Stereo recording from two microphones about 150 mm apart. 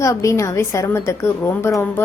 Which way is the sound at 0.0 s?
20° left (ahead or behind).